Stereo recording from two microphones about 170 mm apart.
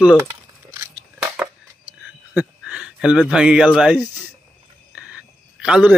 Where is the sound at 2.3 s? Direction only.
5° right (ahead or behind).